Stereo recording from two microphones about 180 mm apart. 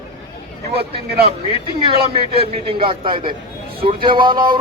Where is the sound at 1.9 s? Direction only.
30° right (ahead or behind).